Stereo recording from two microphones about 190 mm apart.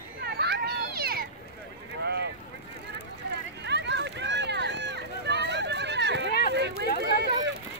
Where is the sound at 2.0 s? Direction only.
60° right (ahead or behind).